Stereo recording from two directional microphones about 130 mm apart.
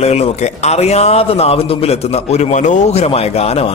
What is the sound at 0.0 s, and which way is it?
A man's voice, 55° left (ahead or behind).